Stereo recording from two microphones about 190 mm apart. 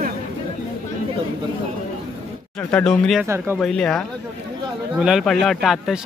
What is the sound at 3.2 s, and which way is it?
Speech, 10° right (ahead or behind).